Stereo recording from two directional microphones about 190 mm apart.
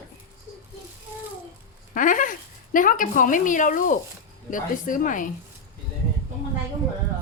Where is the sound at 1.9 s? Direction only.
45° left (ahead or behind).